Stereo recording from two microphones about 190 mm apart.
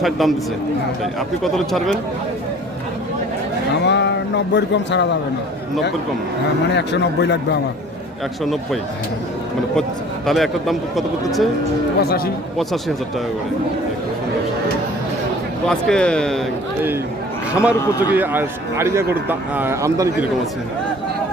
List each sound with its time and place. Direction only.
0.0 s speech: centre (ahead or behind)
1.4 s speech: centre (ahead or behind)
3.8 s speech: 65° left (ahead or behind)
6.7 s a man's voice: 65° left (ahead or behind)
10.2 s speech: centre (ahead or behind)
12.0 s speech: 55° left (ahead or behind)
15.6 s speech: 5° left (ahead or behind)
17.5 s a man's voice: 5° right (ahead or behind)
17.7 s speech: 15° left (ahead or behind)
18.1 s speech: 10° right (ahead or behind)